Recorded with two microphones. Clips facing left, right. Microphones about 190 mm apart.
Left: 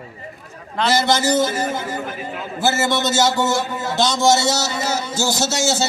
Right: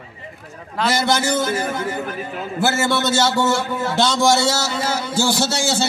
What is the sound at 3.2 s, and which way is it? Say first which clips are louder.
A man's voice: even; 15° left (ahead or behind).